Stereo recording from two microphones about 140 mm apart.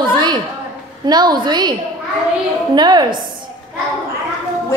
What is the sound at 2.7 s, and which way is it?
Speech, 30° right (ahead or behind).